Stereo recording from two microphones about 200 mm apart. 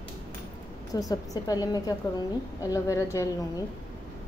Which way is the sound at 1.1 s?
20° left (ahead or behind).